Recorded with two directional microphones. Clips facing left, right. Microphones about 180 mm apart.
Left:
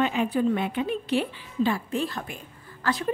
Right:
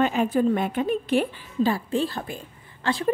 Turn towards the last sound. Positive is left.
turn(degrees=-30)  # may be behind; listen again after turning